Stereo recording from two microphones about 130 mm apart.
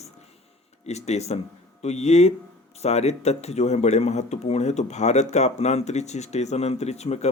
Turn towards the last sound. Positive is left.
turn(degrees=55)  # may be behind; listen again after turning